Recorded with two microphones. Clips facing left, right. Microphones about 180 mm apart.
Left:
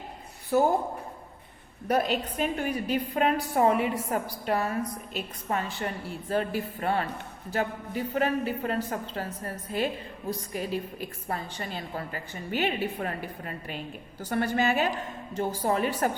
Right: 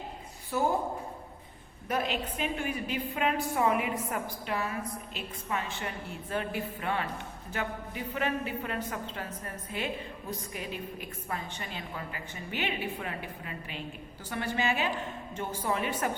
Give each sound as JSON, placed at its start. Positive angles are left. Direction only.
{"t": 0.5, "sound": "a woman's voice", "side_deg": 40}
{"t": 1.9, "sound": "a woman's voice", "side_deg": 40}